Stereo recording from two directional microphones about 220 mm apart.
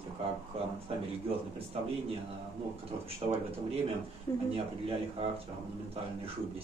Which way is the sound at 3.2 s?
25° right (ahead or behind).